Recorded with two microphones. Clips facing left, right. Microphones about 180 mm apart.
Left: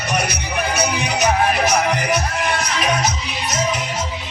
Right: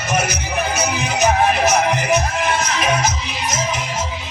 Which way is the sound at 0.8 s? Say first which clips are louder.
Even; 5° right (ahead or behind).